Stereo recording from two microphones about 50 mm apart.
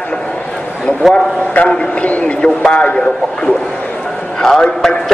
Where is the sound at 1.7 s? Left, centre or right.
Left.